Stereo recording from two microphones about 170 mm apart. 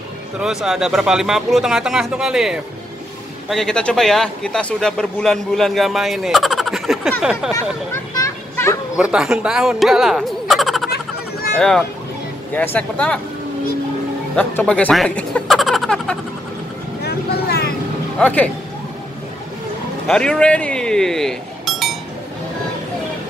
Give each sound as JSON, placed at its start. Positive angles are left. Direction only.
{"t": 0.4, "sound": "a man's voice", "side_deg": 0}
{"t": 7.9, "sound": "children playing", "side_deg": 15}
{"t": 8.9, "sound": "fowl", "side_deg": -5}
{"t": 11.5, "sound": "speech", "side_deg": 5}
{"t": 14.3, "sound": "a sound", "side_deg": 10}
{"t": 17.0, "sound": "vehicle", "side_deg": 70}
{"t": 18.2, "sound": "speech", "side_deg": 10}
{"t": 20.1, "sound": "speech", "side_deg": 5}